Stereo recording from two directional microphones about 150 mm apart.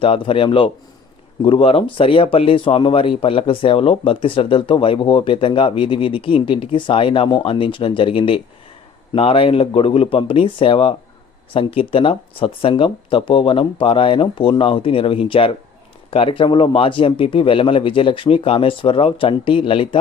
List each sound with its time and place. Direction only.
0.0 s speech: 35° left (ahead or behind)